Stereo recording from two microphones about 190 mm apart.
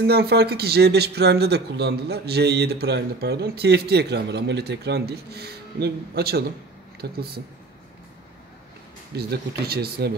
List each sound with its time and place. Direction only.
0.0 s speech: 60° right (ahead or behind)
9.1 s speech: 55° right (ahead or behind)